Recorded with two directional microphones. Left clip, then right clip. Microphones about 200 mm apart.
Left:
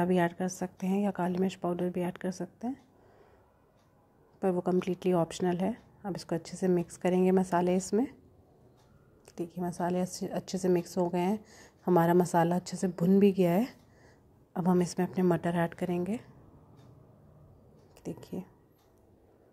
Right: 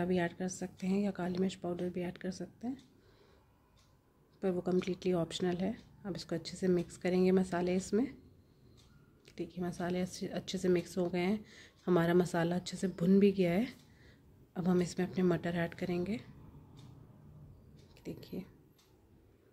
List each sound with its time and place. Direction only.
0.0 s a woman's voice: 15° left (ahead or behind)
4.4 s a woman's voice: 10° left (ahead or behind)
9.2 s a sound: 10° left (ahead or behind)
9.8 s a woman's voice: 15° left (ahead or behind)
17.9 s speech: 15° left (ahead or behind)